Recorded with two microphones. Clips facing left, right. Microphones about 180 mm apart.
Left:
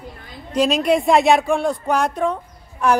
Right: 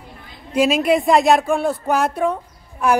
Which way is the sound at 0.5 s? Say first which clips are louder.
Right 1 dB; 5° right (ahead or behind).